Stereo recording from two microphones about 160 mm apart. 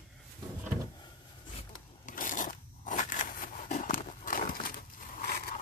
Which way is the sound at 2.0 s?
55° left (ahead or behind).